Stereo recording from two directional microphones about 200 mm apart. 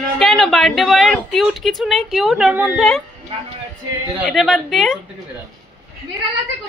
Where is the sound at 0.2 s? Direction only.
Centre (ahead or behind).